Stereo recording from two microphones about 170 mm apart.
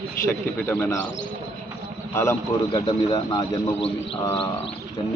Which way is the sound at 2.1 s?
15° left (ahead or behind).